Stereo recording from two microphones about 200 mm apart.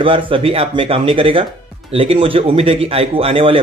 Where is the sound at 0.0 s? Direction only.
25° right (ahead or behind).